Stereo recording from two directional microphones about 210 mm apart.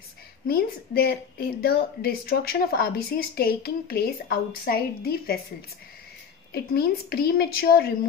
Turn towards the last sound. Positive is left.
turn(degrees=45)  # may be behind; listen again after turning